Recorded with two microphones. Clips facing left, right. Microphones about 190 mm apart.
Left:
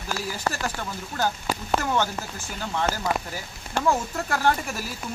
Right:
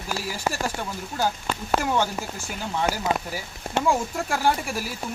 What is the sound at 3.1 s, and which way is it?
Speech, 25° right (ahead or behind).